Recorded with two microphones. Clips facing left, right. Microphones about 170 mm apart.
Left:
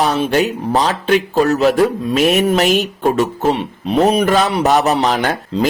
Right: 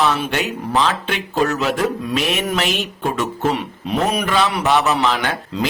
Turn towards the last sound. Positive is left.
turn(degrees=40)  # may be behind; listen again after turning